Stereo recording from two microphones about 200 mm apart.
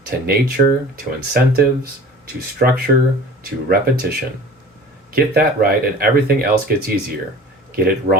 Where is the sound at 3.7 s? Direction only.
50° right (ahead or behind).